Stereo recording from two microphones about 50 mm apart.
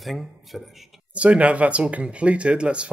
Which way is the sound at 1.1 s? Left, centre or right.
Right.